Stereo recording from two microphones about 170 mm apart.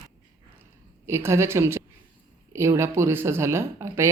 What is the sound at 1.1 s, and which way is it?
Speech, 15° right (ahead or behind).